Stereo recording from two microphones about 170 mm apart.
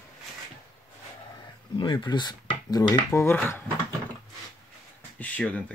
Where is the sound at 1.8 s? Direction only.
30° left (ahead or behind); by 3.6 s 10° left (ahead or behind).